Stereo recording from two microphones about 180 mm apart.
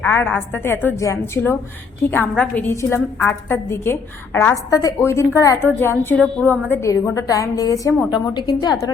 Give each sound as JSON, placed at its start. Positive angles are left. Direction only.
{"t": 0.0, "sound": "a woman's voice", "side_deg": 10}